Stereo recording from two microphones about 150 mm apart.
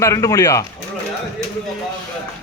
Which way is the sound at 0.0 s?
20° left (ahead or behind).